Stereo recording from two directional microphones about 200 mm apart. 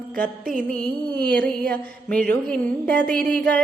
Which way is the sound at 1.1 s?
5° left (ahead or behind).